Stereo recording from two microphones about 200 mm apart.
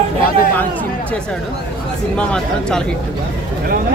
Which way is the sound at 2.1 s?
5° left (ahead or behind).